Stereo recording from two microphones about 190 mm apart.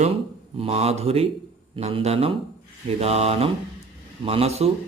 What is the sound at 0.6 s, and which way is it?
Speech, 35° right (ahead or behind).